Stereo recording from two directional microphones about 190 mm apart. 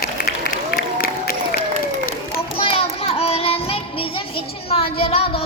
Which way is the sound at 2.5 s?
30° left (ahead or behind).